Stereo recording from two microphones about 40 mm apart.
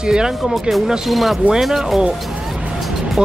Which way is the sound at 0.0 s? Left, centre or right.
Centre.